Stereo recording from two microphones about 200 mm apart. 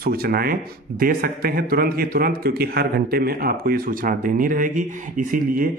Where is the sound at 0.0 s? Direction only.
50° right (ahead or behind).